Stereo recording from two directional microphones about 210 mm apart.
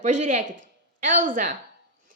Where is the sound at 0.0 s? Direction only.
35° right (ahead or behind).